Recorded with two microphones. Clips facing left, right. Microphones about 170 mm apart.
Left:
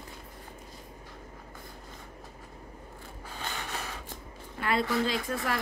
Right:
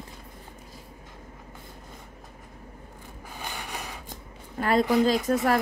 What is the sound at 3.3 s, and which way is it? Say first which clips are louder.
Mechanisms: right 1 dB; 10° right (ahead or behind).